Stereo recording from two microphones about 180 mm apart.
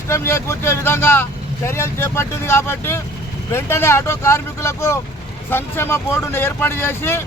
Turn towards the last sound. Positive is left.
turn(degrees=15)  # may be behind; listen again after turning